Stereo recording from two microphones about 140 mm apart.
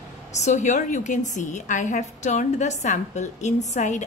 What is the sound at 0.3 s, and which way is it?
A woman's voice, 55° left (ahead or behind).